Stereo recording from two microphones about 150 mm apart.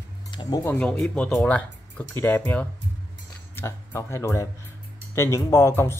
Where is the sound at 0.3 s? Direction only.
30° left (ahead or behind).